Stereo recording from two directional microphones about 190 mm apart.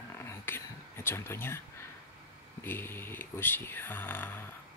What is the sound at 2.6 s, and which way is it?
Speech, 10° left (ahead or behind).